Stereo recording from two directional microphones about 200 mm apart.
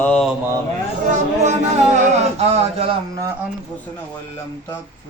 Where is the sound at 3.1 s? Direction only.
15° right (ahead or behind).